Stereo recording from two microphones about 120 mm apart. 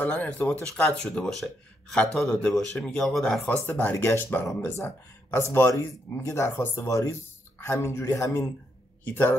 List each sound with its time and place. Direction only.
0.0 s speech: 10° left (ahead or behind)
3.4 s speech: 15° left (ahead or behind)